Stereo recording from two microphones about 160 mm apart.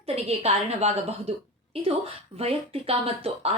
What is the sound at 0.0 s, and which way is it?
A woman's voice, 40° right (ahead or behind).